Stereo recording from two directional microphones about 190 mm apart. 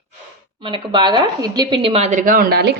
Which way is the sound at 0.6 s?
25° right (ahead or behind).